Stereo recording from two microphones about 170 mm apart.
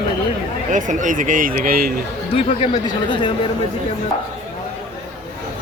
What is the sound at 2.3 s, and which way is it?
Speech, 35° left (ahead or behind).